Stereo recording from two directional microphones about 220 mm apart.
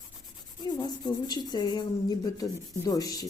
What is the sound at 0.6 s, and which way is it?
Speech, 20° left (ahead or behind).